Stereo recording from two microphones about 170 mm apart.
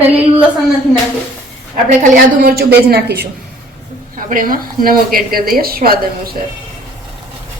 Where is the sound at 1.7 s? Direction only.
60° right (ahead or behind).